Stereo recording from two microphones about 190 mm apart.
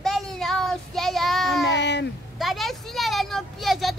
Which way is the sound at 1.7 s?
65° left (ahead or behind).